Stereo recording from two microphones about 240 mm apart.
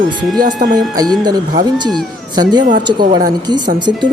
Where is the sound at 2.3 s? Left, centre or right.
Centre.